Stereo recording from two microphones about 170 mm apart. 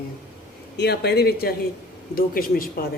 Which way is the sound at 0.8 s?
75° left (ahead or behind).